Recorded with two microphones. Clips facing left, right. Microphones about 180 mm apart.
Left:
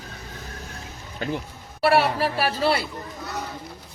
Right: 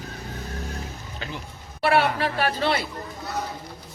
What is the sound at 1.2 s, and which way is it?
Speech, 50° left (ahead or behind).